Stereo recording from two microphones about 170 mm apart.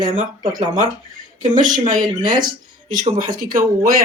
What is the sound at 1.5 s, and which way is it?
Speech, 50° right (ahead or behind).